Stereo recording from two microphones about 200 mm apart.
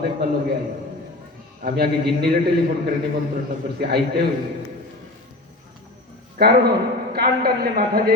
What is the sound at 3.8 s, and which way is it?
Speech, 55° right (ahead or behind).